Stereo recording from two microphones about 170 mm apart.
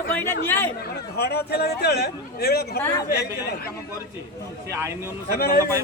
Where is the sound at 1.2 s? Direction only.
70° left (ahead or behind).